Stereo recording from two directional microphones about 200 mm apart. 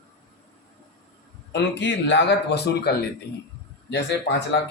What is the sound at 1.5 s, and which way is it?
Speech, 60° left (ahead or behind).